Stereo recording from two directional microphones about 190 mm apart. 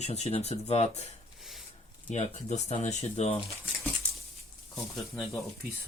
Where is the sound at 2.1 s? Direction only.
35° left (ahead or behind).